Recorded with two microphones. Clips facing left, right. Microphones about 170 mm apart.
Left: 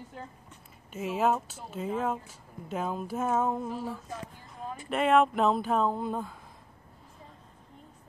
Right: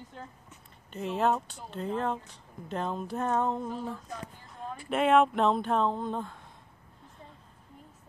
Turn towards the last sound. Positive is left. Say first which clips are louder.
# left 1 dB
turn(degrees=5)  # may be behind; listen again after turning